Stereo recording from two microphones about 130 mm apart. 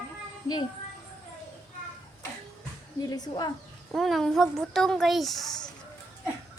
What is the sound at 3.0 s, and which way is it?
Speech, 30° left (ahead or behind).